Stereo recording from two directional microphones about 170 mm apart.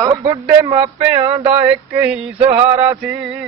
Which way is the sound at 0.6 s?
30° right (ahead or behind).